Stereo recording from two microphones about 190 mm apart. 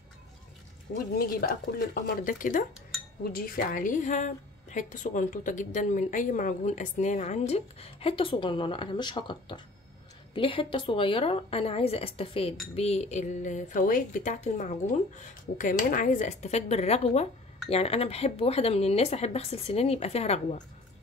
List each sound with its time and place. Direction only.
1.1 s a woman's voice: 50° left (ahead or behind); by 20.6 s 35° left (ahead or behind)